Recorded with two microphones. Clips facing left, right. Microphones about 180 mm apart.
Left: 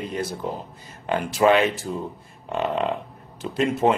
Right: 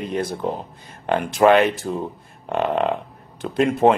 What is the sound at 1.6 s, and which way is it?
Speech, 55° right (ahead or behind).